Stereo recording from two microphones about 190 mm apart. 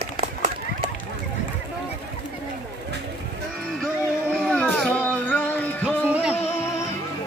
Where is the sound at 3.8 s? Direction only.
5° left (ahead or behind).